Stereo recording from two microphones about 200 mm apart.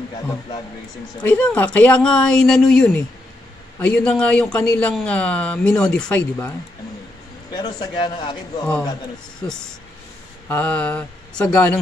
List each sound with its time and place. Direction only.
1.2 s speech: 5° left (ahead or behind)
7.5 s a man's voice: 20° left (ahead or behind)
10.5 s speech: 5° left (ahead or behind)